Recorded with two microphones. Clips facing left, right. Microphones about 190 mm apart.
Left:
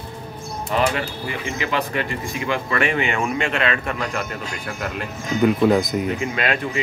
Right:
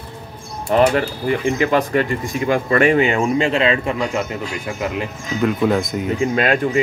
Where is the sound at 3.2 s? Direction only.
30° right (ahead or behind).